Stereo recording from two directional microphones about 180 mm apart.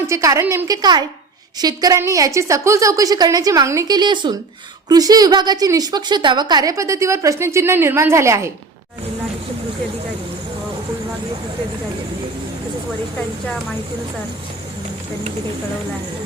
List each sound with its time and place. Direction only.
0.1 s a woman's voice: 15° right (ahead or behind)